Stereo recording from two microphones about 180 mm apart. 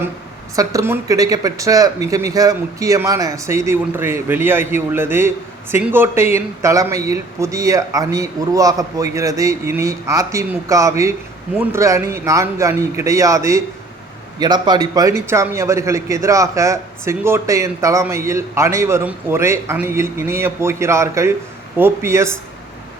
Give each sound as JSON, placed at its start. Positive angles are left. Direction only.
{"t": 0.5, "sound": "a man's voice", "side_deg": -20}